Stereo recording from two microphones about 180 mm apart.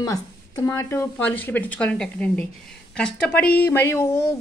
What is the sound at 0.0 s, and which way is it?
Speech, 20° left (ahead or behind).